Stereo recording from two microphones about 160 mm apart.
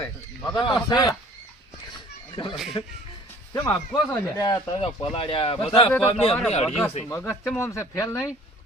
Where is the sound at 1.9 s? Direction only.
30° left (ahead or behind).